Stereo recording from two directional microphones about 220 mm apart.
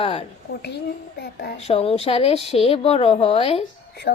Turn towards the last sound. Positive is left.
turn(degrees=50)  # may be behind; listen again after turning